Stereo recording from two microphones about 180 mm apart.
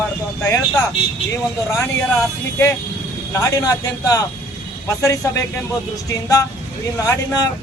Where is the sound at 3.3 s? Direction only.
20° left (ahead or behind).